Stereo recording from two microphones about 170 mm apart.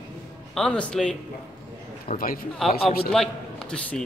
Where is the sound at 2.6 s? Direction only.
Centre (ahead or behind).